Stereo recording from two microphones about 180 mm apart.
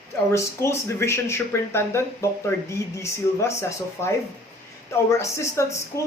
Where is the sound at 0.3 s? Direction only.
15° left (ahead or behind).